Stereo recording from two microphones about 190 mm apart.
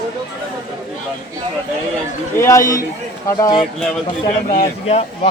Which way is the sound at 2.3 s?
15° left (ahead or behind).